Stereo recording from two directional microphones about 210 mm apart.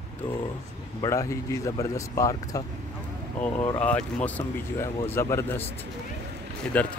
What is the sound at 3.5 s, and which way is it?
Speech, 25° left (ahead or behind).